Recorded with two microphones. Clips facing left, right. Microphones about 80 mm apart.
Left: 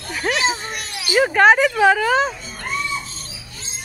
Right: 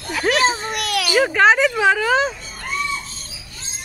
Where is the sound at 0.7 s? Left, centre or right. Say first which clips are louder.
Right 8 dB; right.